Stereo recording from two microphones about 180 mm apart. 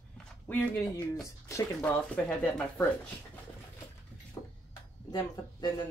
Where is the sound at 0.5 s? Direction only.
10° left (ahead or behind).